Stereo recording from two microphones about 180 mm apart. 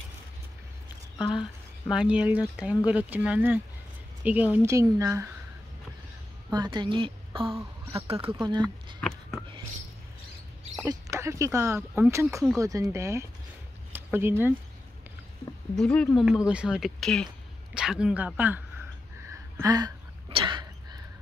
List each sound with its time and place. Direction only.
1.2 s speech: 5° right (ahead or behind)
6.5 s a woman's voice: 25° right (ahead or behind)
10.9 s speech: 15° right (ahead or behind)
15.7 s speech: 5° left (ahead or behind)
19.5 s throat clearing: 20° right (ahead or behind)